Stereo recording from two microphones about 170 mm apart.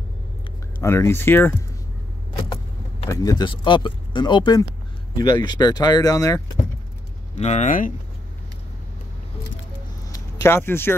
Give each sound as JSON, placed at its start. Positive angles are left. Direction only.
{"t": 0.7, "sound": "speech", "side_deg": 15}
{"t": 3.1, "sound": "speech", "side_deg": 20}
{"t": 7.3, "sound": "speech", "side_deg": 40}
{"t": 10.0, "sound": "a sound", "side_deg": 20}